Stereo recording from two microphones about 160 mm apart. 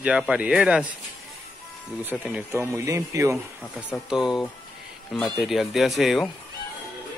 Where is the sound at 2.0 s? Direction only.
10° right (ahead or behind).